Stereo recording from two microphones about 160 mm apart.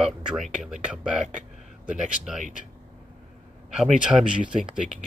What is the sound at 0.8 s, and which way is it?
Speech, 5° right (ahead or behind).